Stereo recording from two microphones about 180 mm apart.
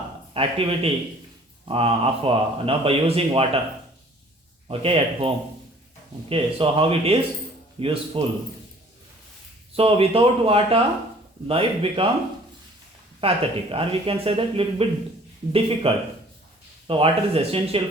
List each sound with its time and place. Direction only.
0.3 s a man's voice: 30° right (ahead or behind)
4.7 s a man's voice: 30° right (ahead or behind)
9.7 s a man's voice: 30° right (ahead or behind)
13.2 s a man's voice: 30° right (ahead or behind)
15.9 s a man's voice: 30° right (ahead or behind)